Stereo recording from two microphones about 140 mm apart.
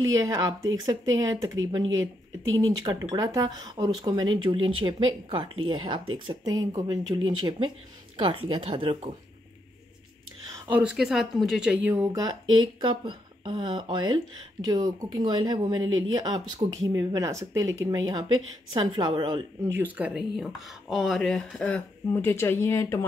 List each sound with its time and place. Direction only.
0.1 s speech: 25° right (ahead or behind); by 9.1 s 40° right (ahead or behind)
10.7 s speech: 10° right (ahead or behind)
11.9 s speech: 25° right (ahead or behind)
12.8 s speech: 35° right (ahead or behind)
19.7 s speech: 10° right (ahead or behind); by 22.9 s 20° left (ahead or behind)